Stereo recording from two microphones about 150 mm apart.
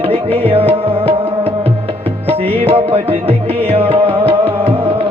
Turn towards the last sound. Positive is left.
turn(degrees=-40)  # may be behind; listen again after turning